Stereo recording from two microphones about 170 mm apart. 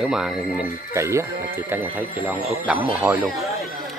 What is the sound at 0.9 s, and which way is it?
Speech, 15° right (ahead or behind).